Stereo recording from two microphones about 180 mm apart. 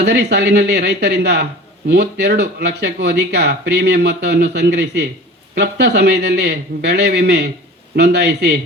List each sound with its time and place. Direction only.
0.0 s a man's voice: 65° right (ahead or behind)